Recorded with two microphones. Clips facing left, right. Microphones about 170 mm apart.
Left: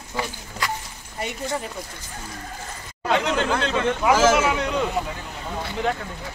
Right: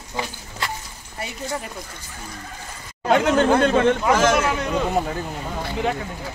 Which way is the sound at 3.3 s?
50° right (ahead or behind).